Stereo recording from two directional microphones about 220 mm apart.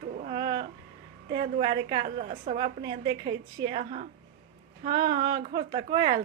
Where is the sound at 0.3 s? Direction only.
20° right (ahead or behind).